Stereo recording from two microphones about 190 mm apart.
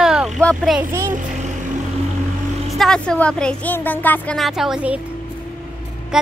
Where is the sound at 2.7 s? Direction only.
Centre (ahead or behind).